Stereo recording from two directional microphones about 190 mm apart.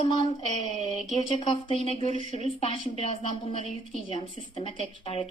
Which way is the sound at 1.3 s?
30° left (ahead or behind).